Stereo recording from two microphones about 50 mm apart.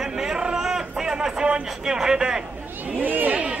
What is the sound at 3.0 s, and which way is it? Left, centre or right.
Speech, right.